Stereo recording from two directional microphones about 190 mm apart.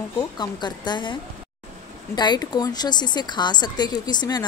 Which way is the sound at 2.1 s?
20° left (ahead or behind).